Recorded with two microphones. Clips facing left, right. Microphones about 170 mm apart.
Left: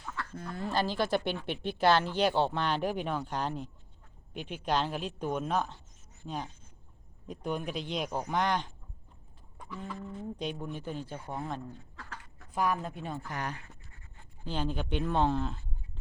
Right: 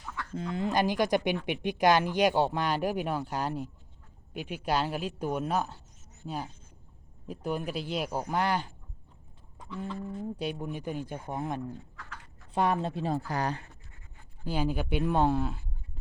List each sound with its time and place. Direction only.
0.2 s speech: 20° right (ahead or behind)
10.2 s speech: 10° right (ahead or behind)
12.5 s speech: 30° right (ahead or behind)
14.4 s speech: 10° right (ahead or behind)